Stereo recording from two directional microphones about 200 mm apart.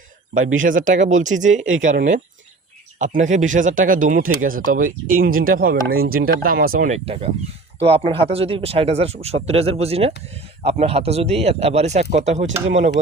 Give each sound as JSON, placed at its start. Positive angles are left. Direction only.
{"t": 0.3, "sound": "speech", "side_deg": -40}
{"t": 4.2, "sound": "speech", "side_deg": -90}
{"t": 4.4, "sound": "speech", "side_deg": -45}